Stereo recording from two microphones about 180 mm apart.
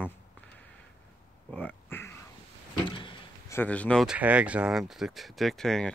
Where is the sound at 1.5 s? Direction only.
10° left (ahead or behind).